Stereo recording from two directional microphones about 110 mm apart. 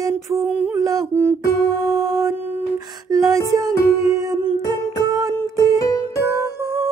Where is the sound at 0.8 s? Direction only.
35° right (ahead or behind).